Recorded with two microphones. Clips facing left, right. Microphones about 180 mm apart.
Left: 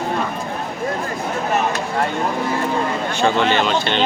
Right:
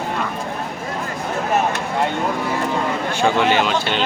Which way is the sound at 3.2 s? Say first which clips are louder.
Even; 10° right (ahead or behind).